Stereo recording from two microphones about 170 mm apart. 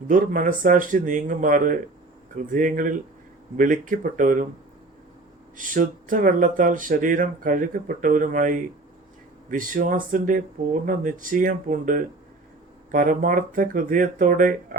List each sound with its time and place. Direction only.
0.1 s speech: 50° right (ahead or behind)
5.5 s speech: 50° right (ahead or behind)